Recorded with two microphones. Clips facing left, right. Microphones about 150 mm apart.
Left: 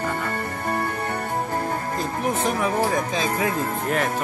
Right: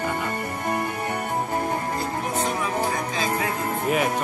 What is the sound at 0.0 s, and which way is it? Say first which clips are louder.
Music: even; 15° right (ahead or behind).